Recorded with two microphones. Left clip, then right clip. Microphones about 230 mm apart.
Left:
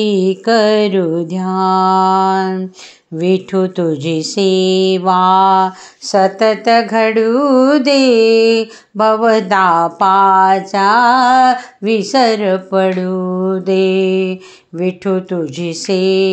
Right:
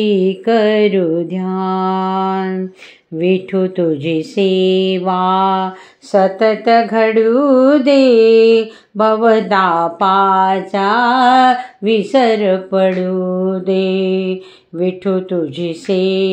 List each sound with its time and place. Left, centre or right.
0.0 s speech: left